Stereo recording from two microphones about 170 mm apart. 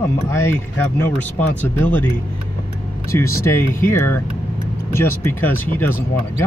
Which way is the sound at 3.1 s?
15° left (ahead or behind).